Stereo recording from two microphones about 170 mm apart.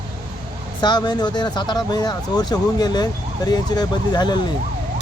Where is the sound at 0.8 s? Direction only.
25° left (ahead or behind).